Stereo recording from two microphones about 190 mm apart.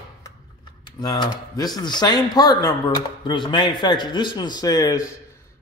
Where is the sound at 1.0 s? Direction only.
20° left (ahead or behind).